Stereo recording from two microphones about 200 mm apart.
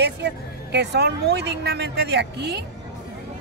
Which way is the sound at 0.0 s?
60° right (ahead or behind).